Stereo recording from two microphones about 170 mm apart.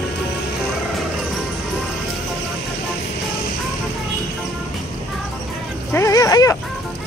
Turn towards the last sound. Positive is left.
turn(degrees=20)  # may be behind; listen again after turning